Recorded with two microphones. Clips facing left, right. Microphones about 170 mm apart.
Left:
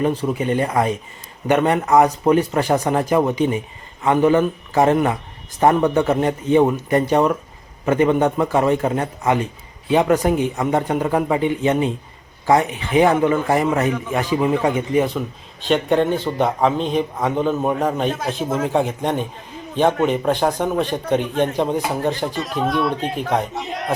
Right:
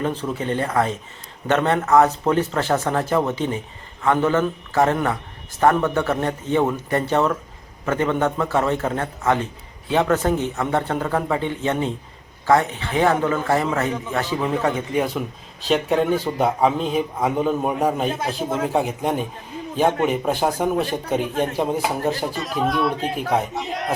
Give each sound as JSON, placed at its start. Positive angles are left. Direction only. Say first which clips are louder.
{"t": 0.0, "sound": "speech", "louder": "left 4 dB", "side_deg": 10}
{"t": 15.6, "sound": "a man's voice", "louder": "left 2 dB", "side_deg": 0}